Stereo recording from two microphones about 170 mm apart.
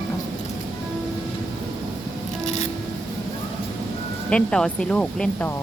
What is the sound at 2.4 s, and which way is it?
Music, 45° left (ahead or behind).